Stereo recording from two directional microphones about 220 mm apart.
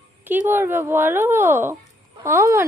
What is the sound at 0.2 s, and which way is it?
A woman's voice, 10° right (ahead or behind).